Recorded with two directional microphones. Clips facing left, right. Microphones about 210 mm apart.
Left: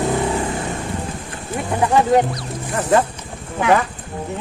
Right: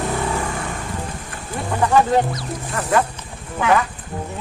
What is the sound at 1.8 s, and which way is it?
Music, 20° left (ahead or behind).